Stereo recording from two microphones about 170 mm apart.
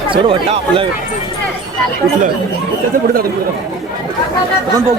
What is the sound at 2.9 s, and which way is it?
Speech, 55° right (ahead or behind).